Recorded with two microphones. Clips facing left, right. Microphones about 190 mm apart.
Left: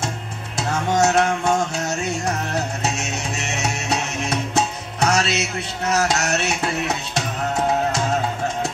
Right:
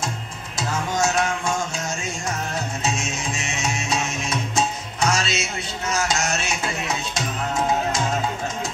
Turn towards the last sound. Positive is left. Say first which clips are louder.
# left 3 dB
turn(degrees=65)  # may be behind; listen again after turning